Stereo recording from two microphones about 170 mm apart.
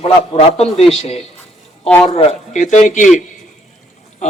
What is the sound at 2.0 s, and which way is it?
Speech, 35° left (ahead or behind).